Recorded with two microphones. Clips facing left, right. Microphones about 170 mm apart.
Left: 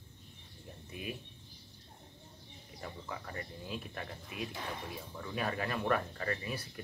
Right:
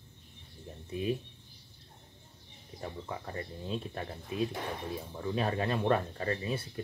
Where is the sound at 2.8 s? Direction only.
30° right (ahead or behind).